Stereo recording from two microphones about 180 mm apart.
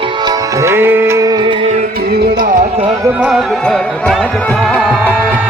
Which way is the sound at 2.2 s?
50° right (ahead or behind).